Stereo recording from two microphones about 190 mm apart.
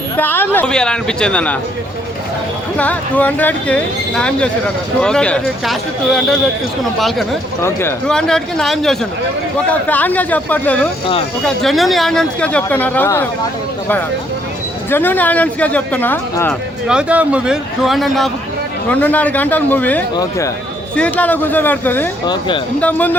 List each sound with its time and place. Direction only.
0.2 s speech: 10° left (ahead or behind)
2.7 s a man's voice: 10° left (ahead or behind)
7.6 s a man's voice: 15° left (ahead or behind)
14.8 s speech: 10° left (ahead or behind)
16.5 s a man's voice: 5° right (ahead or behind)
22.3 s speech: 25° left (ahead or behind)
22.8 s speech: 10° left (ahead or behind)